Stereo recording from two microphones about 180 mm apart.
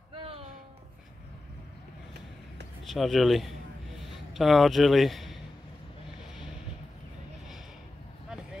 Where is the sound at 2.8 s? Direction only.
Centre (ahead or behind).